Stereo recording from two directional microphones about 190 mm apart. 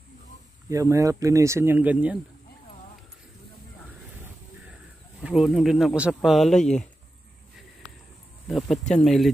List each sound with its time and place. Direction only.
0.7 s speech: 15° right (ahead or behind)
5.2 s speech: centre (ahead or behind)
8.5 s speech: centre (ahead or behind)